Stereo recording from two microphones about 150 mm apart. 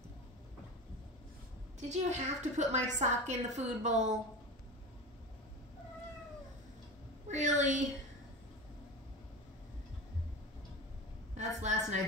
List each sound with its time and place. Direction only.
1.8 s a woman's voice: 50° right (ahead or behind)
7.2 s a woman's voice: 55° right (ahead or behind)
11.3 s a woman's voice: 50° right (ahead or behind)